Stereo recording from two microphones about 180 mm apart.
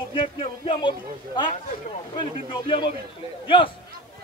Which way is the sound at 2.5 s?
25° left (ahead or behind).